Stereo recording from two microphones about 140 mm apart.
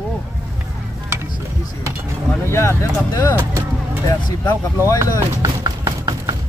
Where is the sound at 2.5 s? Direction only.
20° left (ahead or behind).